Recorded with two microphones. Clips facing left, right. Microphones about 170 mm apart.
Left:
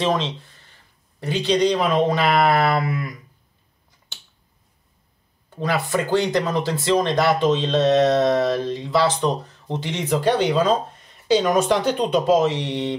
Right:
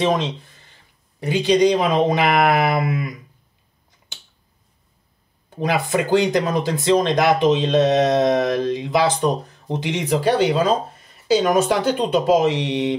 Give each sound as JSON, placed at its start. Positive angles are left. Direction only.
{"t": 0.0, "sound": "speech", "side_deg": -15}
{"t": 5.5, "sound": "speech", "side_deg": -15}